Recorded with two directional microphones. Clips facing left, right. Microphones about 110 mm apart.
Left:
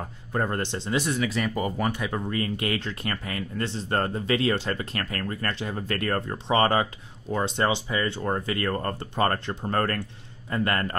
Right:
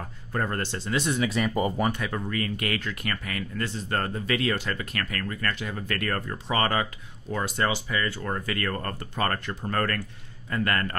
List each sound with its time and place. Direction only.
0.3 s speech: 20° left (ahead or behind)
1.1 s speech: 20° right (ahead or behind)
1.9 s speech: 15° left (ahead or behind)